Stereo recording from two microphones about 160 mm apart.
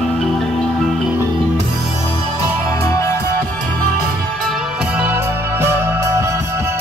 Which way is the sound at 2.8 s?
20° left (ahead or behind).